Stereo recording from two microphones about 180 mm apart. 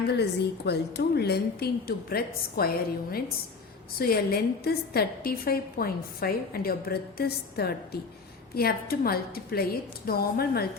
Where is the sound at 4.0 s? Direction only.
55° left (ahead or behind).